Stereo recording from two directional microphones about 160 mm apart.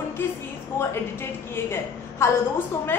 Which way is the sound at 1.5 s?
15° left (ahead or behind).